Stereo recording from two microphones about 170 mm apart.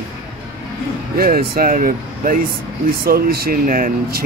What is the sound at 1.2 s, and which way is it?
Speech, 60° right (ahead or behind).